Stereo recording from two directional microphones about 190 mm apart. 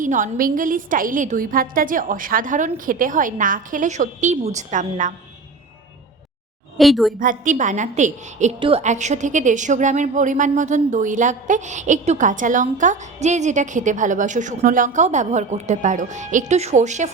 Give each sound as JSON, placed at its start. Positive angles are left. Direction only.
{"t": 0.0, "sound": "a woman's voice", "side_deg": -45}
{"t": 6.7, "sound": "a woman's voice", "side_deg": 0}
{"t": 7.2, "sound": "a woman's voice", "side_deg": -45}
{"t": 8.5, "sound": "a woman's voice", "side_deg": -25}
{"t": 8.8, "sound": "a woman's voice", "side_deg": -40}